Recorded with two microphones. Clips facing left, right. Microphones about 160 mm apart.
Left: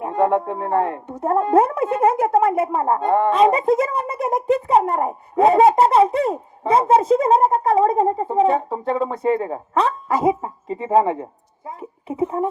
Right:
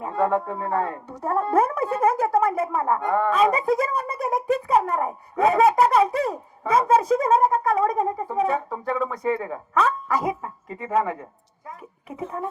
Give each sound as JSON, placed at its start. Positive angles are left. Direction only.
{"t": 0.0, "sound": "speech", "side_deg": 20}